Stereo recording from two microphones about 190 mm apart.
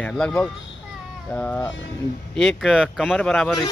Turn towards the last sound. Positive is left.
turn(degrees=5)  # may be behind; listen again after turning